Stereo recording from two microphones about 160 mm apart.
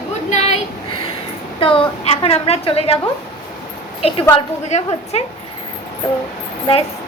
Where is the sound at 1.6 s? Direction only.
35° left (ahead or behind).